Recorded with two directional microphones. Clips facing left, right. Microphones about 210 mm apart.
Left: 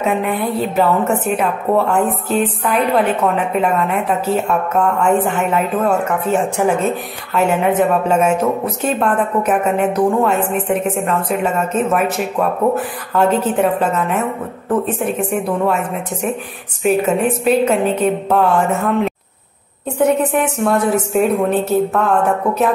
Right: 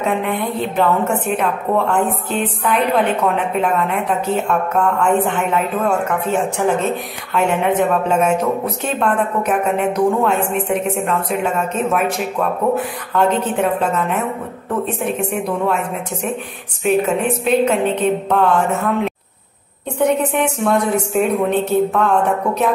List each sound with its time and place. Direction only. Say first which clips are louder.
0.0 s a woman's voice: left 2 dB; 5° left (ahead or behind)
15.3 s a woman's voice: left 4 dB; 5° left (ahead or behind)
20.5 s a woman's voice: left 1 dB; 5° left (ahead or behind)